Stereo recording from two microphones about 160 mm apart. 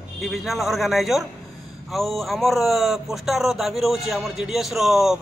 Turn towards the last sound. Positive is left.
turn(degrees=0)  # may be behind; listen again after turning